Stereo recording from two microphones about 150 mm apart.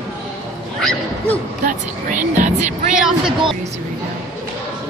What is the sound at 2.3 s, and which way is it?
Speech, 55° right (ahead or behind).